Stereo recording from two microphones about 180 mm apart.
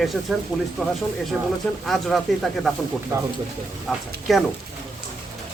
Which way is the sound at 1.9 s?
Centre (ahead or behind).